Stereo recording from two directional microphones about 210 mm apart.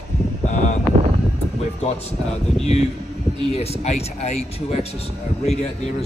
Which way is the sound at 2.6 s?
30° left (ahead or behind).